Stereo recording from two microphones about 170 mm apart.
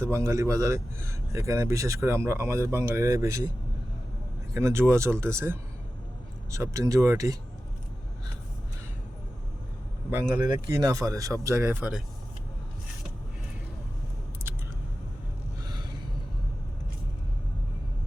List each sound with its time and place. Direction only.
0.0 s a man's voice: 15° right (ahead or behind)
4.5 s a man's voice: 15° right (ahead or behind)
10.3 s speech: 25° right (ahead or behind); by 12.0 s 5° right (ahead or behind)